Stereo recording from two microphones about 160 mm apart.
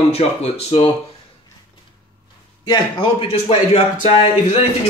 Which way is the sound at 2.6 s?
30° left (ahead or behind).